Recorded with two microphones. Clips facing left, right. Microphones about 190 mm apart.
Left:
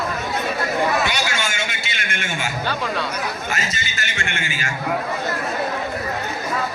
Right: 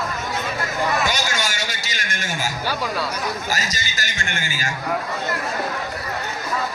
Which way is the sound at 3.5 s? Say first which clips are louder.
Even; 40° right (ahead or behind).